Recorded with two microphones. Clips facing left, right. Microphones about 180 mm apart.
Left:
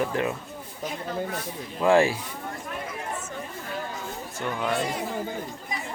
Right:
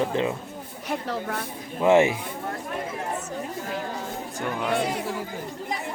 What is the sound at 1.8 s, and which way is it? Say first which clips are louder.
Speech: right 2 dB; 20° right (ahead or behind).